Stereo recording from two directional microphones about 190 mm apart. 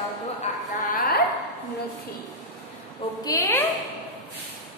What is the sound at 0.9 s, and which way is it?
Speech, 55° left (ahead or behind).